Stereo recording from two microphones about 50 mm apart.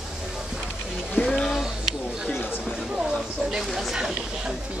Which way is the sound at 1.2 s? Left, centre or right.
Centre.